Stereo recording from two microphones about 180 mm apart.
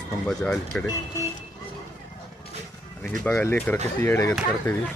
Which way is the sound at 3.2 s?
10° left (ahead or behind).